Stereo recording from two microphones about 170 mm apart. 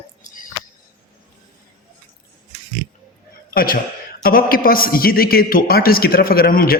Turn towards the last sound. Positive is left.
turn(degrees=60)  # may be behind; listen again after turning